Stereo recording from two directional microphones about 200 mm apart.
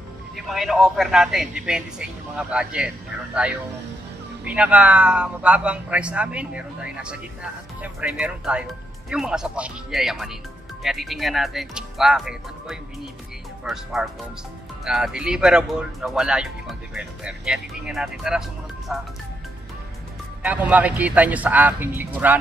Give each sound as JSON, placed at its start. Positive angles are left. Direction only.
{"t": 0.5, "sound": "speech", "side_deg": 0}
{"t": 4.5, "sound": "speech", "side_deg": -5}
{"t": 14.9, "sound": "speech", "side_deg": -5}
{"t": 20.4, "sound": "a man's voice", "side_deg": -5}